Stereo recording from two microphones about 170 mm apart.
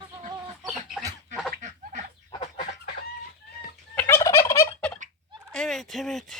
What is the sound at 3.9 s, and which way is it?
Fowl, 15° left (ahead or behind).